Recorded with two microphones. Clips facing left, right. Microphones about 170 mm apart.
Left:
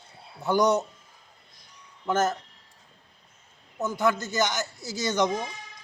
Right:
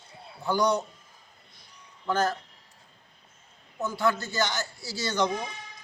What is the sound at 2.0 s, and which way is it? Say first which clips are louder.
Speech: left 2 dB; 20° left (ahead or behind).